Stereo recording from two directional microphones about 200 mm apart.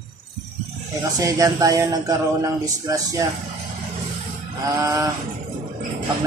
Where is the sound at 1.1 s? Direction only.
15° right (ahead or behind).